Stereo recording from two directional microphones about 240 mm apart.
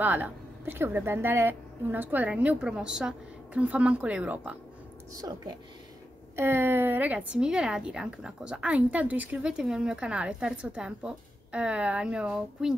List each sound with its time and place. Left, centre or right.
0.0 s speech: centre
6.3 s a woman's voice: centre